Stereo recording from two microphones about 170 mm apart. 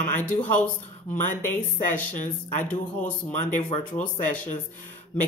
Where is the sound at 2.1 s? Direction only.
45° left (ahead or behind).